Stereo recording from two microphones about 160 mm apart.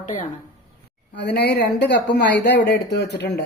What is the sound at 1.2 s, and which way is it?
Speech, 90° left.